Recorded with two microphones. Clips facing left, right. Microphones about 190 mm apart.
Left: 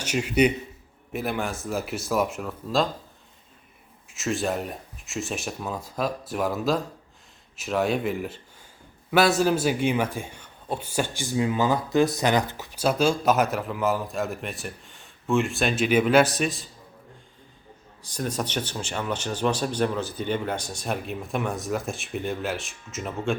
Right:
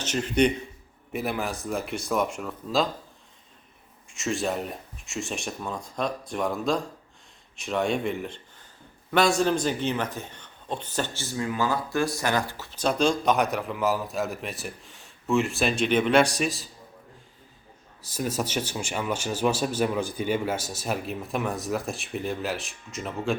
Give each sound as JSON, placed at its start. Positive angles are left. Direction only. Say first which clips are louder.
{"t": 0.0, "sound": "speech", "louder": "left 1 dB", "side_deg": 10}
{"t": 4.1, "sound": "speech", "louder": "left 1 dB", "side_deg": 0}
{"t": 18.0, "sound": "speech", "louder": "even", "side_deg": -5}